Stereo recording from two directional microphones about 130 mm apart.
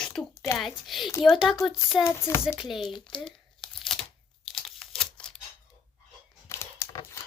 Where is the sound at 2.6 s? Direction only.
Centre (ahead or behind).